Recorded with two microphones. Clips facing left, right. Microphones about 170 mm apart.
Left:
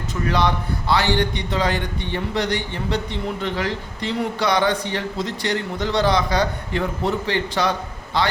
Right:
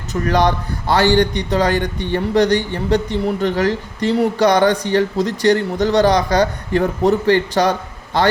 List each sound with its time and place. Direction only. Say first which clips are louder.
0.1 s a man's voice: right 5 dB; 45° right (ahead or behind)